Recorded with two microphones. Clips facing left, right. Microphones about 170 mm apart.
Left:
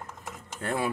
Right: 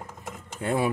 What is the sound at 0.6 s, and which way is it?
Speech, 15° right (ahead or behind).